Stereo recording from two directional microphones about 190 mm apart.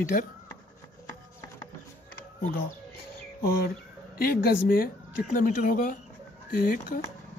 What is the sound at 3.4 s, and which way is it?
Speech, 55° left (ahead or behind).